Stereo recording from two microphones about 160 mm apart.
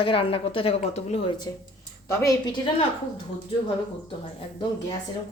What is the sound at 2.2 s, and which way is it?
Speech, 30° left (ahead or behind).